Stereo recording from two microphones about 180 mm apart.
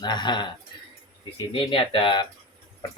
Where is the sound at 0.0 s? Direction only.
25° left (ahead or behind).